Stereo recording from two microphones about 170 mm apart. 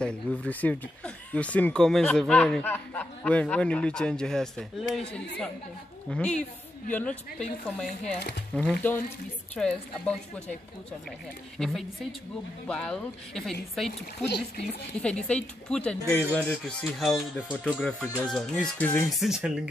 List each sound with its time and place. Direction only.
0.0 s speech: 5° left (ahead or behind)
8.2 s speech: 80° left
8.8 s speech: 10° left (ahead or behind)
16.8 s speech: centre (ahead or behind)
19.0 s speech: centre (ahead or behind)